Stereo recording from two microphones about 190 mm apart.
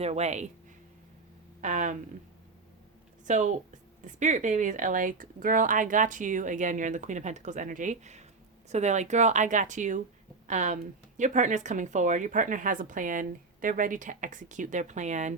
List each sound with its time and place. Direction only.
0.0 s speech: 35° right (ahead or behind)
1.6 s speech: 40° right (ahead or behind)
3.2 s a woman's voice: 40° right (ahead or behind)